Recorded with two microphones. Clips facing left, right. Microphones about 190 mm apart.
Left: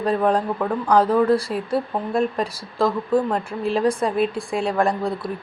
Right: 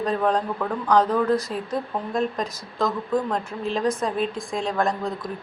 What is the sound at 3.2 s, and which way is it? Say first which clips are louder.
A woman's voice: left 3 dB; 10° left (ahead or behind).